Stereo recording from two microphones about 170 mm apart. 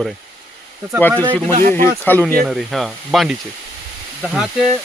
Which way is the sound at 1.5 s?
55° right (ahead or behind).